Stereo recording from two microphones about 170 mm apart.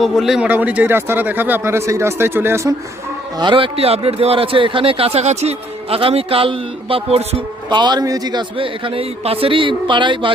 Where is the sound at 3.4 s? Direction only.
30° right (ahead or behind).